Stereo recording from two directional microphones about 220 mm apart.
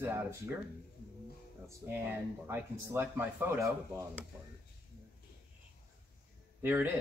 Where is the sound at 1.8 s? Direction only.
15° right (ahead or behind).